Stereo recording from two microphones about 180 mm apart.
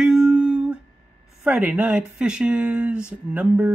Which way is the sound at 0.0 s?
5° right (ahead or behind).